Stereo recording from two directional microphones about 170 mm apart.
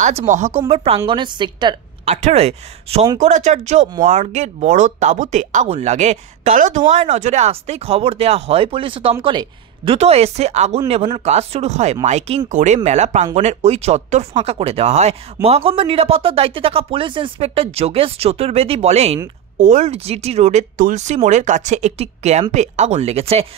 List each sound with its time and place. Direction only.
0.0 s speech: 40° right (ahead or behind); by 1.8 s 25° right (ahead or behind)
2.0 s speech: 40° right (ahead or behind)